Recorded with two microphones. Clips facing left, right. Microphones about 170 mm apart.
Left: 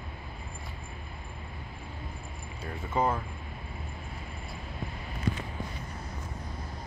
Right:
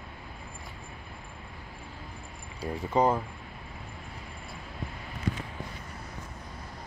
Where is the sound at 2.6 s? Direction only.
35° right (ahead or behind).